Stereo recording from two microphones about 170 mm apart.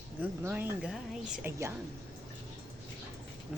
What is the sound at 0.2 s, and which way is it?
Speech, 10° right (ahead or behind).